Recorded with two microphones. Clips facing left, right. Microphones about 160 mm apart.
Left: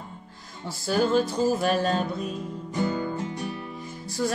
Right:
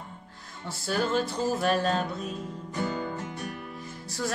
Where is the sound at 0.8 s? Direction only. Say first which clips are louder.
Left 5 dB; 5° left (ahead or behind).